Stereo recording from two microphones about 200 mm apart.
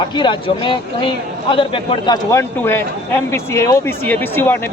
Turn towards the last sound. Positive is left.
turn(degrees=10)  # may be behind; listen again after turning